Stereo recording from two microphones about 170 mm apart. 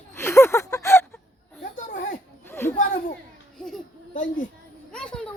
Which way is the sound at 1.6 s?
50° left (ahead or behind).